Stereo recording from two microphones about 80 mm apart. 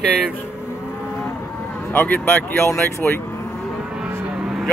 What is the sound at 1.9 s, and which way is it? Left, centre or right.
Speech, left.